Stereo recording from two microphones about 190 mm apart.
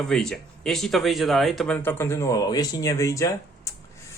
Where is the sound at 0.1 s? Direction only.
5° left (ahead or behind).